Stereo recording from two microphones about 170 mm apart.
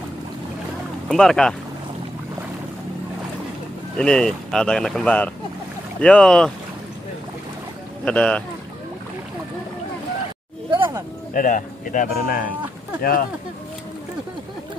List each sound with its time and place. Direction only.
1.0 s speech: 5° left (ahead or behind)
4.0 s speech: 5° left (ahead or behind)
8.0 s speech: 5° left (ahead or behind)
10.8 s a sound: 20° right (ahead or behind)
11.3 s speech: 50° left (ahead or behind)